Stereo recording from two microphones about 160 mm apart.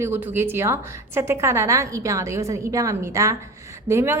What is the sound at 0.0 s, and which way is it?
A woman's voice, 15° right (ahead or behind).